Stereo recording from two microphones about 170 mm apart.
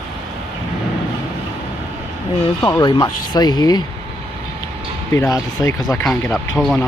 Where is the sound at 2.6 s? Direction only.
20° left (ahead or behind).